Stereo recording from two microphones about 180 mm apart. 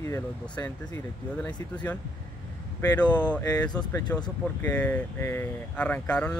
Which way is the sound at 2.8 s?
20° left (ahead or behind).